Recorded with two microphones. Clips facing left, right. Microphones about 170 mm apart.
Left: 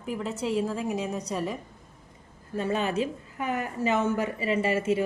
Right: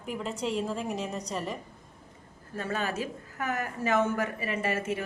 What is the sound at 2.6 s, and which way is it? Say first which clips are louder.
A woman's voice: left 5 dB; 15° left (ahead or behind).